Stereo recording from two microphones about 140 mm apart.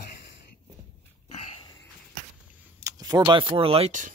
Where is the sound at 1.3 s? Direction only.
50° left (ahead or behind).